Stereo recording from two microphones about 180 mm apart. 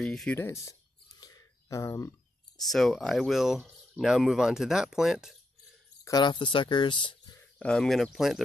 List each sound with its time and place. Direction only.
0.0 s speech: 5° left (ahead or behind)
1.2 s whispering: 20° left (ahead or behind)
2.6 s speech: centre (ahead or behind)
6.0 s speech: 25° left (ahead or behind)
7.5 s speech: 5° left (ahead or behind)